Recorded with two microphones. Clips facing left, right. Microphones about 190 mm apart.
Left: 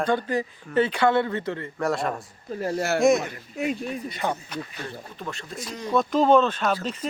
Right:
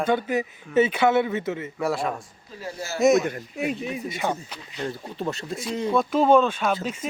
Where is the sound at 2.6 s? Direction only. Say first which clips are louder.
Left 8 dB; 60° left (ahead or behind).